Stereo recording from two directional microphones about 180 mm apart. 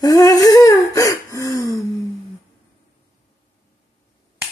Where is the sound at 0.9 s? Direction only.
20° left (ahead or behind).